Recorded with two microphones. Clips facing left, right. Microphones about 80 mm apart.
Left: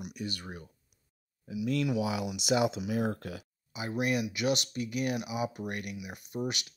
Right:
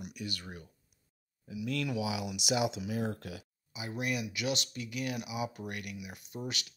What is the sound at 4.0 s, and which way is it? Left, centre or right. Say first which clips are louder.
Speech: left 5 dB; left.